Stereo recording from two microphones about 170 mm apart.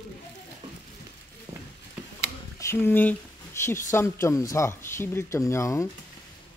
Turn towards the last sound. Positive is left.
turn(degrees=15)  # may be behind; listen again after turning